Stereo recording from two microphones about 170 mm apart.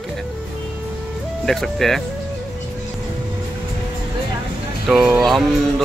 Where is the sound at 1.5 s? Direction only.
Centre (ahead or behind).